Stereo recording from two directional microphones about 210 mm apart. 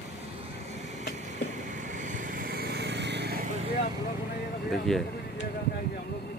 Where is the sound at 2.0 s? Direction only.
40° right (ahead or behind).